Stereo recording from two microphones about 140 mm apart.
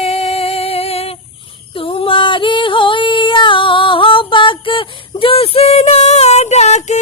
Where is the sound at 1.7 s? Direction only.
40° left (ahead or behind).